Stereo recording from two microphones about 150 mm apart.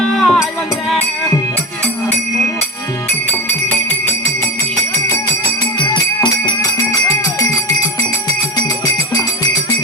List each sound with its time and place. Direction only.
0.0 s music: centre (ahead or behind)
5.9 s music: 30° left (ahead or behind)